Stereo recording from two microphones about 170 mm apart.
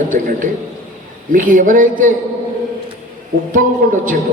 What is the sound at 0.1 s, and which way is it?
A man's voice, 50° right (ahead or behind).